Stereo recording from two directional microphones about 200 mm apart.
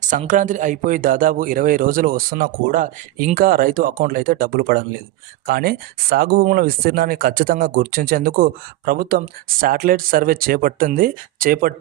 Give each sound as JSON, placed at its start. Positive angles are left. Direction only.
{"t": 0.0, "sound": "speech", "side_deg": -40}